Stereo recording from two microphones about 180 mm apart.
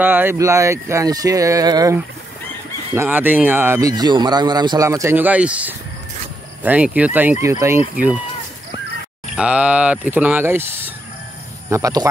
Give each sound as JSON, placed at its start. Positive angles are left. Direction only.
{"t": 0.0, "sound": "speech", "side_deg": -10}
{"t": 9.3, "sound": "speech", "side_deg": -5}
{"t": 11.7, "sound": "speech", "side_deg": -20}